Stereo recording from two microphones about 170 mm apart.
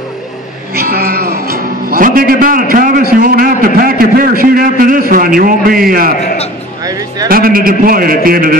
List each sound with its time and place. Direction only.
0.7 s speech: 60° right (ahead or behind)
6.8 s a sound: 20° right (ahead or behind)
7.2 s speech: 60° right (ahead or behind)